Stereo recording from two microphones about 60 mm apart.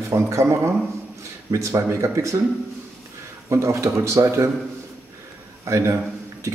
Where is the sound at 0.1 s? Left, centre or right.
Right.